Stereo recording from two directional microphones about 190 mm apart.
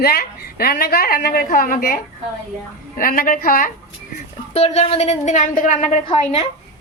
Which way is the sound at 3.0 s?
50° left (ahead or behind).